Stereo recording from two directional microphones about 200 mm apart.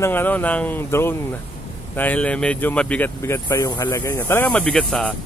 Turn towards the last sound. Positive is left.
turn(degrees=5)  # may be behind; listen again after turning